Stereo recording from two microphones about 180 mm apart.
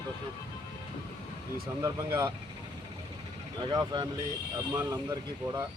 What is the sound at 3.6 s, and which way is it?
Speech, 25° right (ahead or behind).